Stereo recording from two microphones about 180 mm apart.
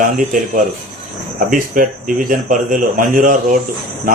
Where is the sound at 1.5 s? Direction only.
50° right (ahead or behind).